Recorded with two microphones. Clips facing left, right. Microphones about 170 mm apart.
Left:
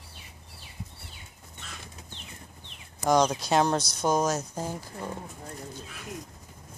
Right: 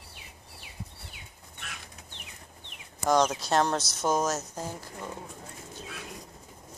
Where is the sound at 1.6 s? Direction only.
70° right (ahead or behind).